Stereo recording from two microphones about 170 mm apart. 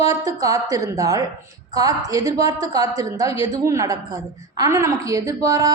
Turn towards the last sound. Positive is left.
turn(degrees=-20)  # may be behind; listen again after turning